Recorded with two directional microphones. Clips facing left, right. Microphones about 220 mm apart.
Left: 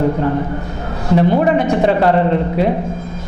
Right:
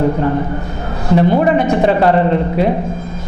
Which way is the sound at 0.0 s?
20° right (ahead or behind).